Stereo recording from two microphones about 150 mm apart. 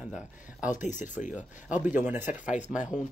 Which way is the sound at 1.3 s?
10° right (ahead or behind).